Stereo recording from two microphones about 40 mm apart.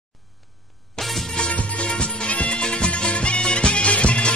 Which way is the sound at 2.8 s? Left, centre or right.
Left.